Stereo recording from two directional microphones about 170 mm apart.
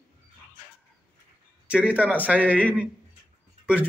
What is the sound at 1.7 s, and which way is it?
Speech, 5° right (ahead or behind).